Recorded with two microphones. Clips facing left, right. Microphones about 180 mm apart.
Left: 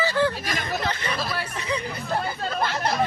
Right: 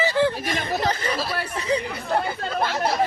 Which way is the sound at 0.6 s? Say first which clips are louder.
Right 3 dB; 35° right (ahead or behind).